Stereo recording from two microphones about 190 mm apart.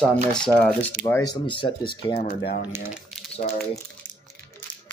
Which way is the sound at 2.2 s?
50° left (ahead or behind).